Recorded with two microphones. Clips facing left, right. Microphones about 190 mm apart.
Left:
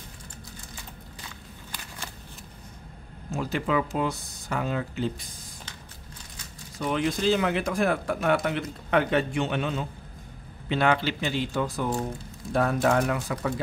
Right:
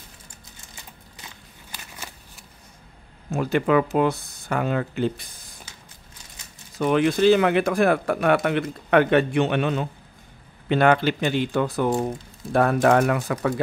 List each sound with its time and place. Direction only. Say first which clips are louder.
3.3 s speech: right 7 dB; 60° right (ahead or behind)
6.8 s speech: right 7 dB; 70° right (ahead or behind)
10.7 s speech: right 6 dB; 55° right (ahead or behind)